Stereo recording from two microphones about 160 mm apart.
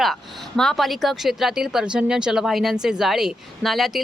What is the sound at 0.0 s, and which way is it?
Speech, centre (ahead or behind).